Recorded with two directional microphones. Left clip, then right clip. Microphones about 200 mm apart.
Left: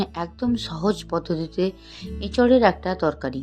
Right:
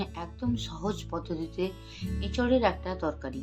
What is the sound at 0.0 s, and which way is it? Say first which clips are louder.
A woman's voice: left 9 dB; 35° left (ahead or behind).